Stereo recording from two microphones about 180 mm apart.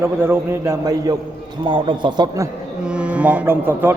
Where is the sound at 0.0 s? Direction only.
15° right (ahead or behind).